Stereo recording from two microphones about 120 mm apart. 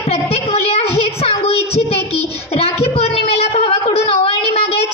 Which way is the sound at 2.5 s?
55° left (ahead or behind).